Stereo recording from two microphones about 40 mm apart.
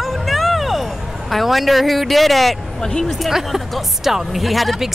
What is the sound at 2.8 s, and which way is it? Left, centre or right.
Speech, centre.